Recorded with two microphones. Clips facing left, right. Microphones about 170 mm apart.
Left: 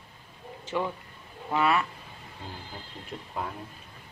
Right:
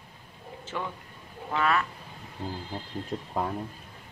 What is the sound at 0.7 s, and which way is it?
Speech, 10° left (ahead or behind).